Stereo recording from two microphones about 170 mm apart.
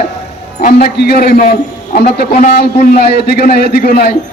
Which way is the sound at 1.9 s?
55° left (ahead or behind).